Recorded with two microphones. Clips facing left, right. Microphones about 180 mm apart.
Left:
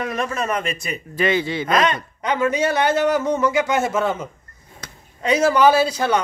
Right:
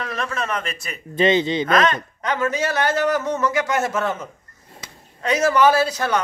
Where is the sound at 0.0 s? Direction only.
20° left (ahead or behind).